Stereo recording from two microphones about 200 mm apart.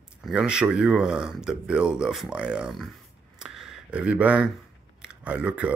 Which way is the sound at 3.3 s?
Centre (ahead or behind).